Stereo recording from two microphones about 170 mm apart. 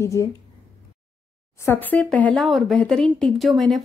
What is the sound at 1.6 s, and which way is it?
Speech, 10° left (ahead or behind).